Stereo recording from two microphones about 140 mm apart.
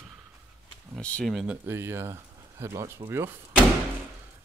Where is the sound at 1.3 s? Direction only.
10° right (ahead or behind).